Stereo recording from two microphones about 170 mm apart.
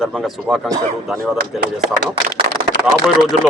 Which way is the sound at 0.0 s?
Centre (ahead or behind).